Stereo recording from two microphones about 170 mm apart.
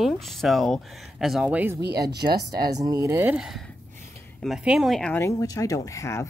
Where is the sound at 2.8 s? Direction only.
20° right (ahead or behind); by 5.2 s 5° left (ahead or behind).